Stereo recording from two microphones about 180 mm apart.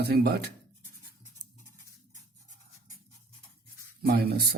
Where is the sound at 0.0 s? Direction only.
60° right (ahead or behind).